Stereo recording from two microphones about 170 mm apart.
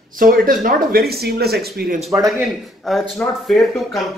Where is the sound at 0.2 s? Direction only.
55° right (ahead or behind).